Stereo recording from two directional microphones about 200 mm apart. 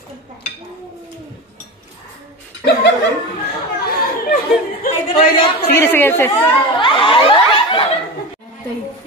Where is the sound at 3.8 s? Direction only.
50° left (ahead or behind).